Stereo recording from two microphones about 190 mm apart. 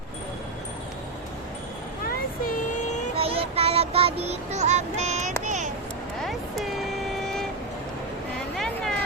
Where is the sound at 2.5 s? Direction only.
40° left (ahead or behind).